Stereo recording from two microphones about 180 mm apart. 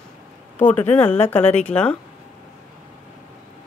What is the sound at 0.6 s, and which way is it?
Speech, 10° left (ahead or behind).